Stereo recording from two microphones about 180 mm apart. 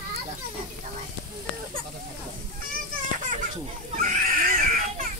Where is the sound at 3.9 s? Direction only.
50° right (ahead or behind).